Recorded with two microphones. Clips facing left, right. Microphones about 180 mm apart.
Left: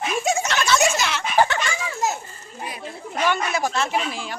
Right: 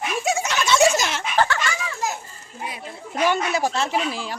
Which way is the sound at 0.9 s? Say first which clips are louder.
Right 1 dB; 45° right (ahead or behind).